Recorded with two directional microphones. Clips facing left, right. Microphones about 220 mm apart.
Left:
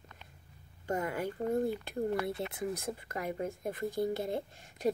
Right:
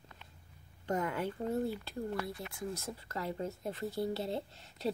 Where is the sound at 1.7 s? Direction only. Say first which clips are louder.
Left 5 dB; 20° left (ahead or behind).